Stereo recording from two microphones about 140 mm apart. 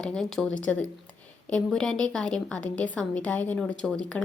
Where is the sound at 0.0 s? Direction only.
5° left (ahead or behind).